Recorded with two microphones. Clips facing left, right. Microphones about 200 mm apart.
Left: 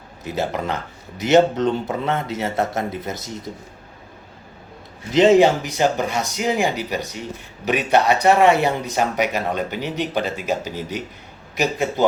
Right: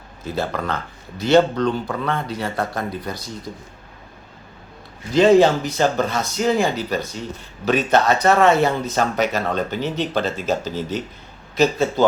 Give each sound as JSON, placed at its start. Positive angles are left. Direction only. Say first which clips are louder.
{"t": 0.3, "sound": "a man's voice", "louder": "even", "side_deg": 20}
{"t": 5.1, "sound": "speech", "louder": "even", "side_deg": 20}